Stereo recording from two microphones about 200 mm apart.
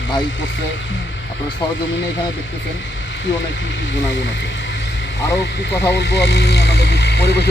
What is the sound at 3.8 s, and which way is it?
Speech, 65° left (ahead or behind).